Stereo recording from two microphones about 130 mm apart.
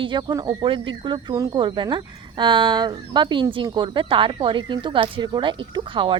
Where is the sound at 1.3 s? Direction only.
25° right (ahead or behind).